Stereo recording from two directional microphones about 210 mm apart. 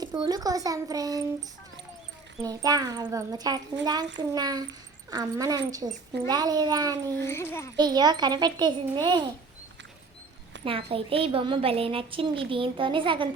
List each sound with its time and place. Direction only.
0.0 s speech: 20° right (ahead or behind)
2.4 s a woman's voice: 15° right (ahead or behind)
7.3 s a child's voice: 10° left (ahead or behind)
7.8 s a woman's voice: 20° right (ahead or behind)
10.6 s a woman's voice: 25° right (ahead or behind)